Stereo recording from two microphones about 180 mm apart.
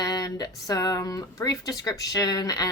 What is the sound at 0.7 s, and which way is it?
Speech, 20° left (ahead or behind).